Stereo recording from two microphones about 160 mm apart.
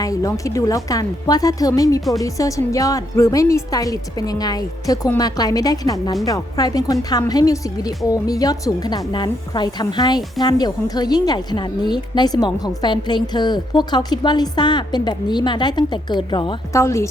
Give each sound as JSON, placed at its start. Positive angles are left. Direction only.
{"t": 0.0, "sound": "a woman's voice", "side_deg": 20}
{"t": 16.7, "sound": "speech", "side_deg": 20}